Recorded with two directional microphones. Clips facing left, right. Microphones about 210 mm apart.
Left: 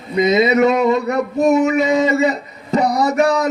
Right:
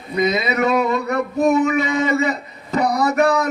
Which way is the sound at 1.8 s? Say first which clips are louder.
Left 4 dB; 55° right (ahead or behind).